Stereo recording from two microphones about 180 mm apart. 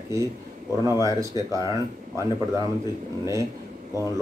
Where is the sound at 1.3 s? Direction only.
25° left (ahead or behind).